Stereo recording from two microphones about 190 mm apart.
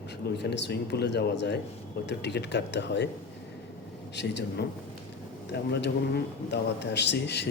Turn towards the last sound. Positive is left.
turn(degrees=65)  # may be behind; listen again after turning